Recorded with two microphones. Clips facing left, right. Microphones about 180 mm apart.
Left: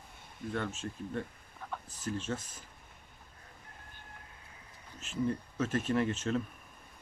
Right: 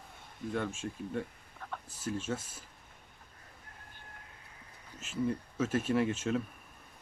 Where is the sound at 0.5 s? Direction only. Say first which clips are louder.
Right 1 dB; 10° right (ahead or behind).